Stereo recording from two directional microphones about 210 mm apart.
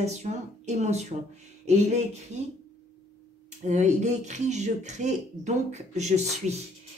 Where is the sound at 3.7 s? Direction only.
35° right (ahead or behind).